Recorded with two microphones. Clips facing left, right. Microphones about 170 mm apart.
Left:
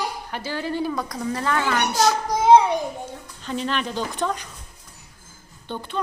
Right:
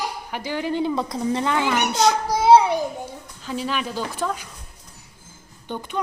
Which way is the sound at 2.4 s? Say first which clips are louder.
Even; 10° right (ahead or behind).